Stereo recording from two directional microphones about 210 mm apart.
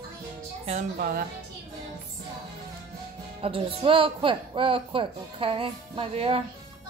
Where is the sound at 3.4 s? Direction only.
25° right (ahead or behind).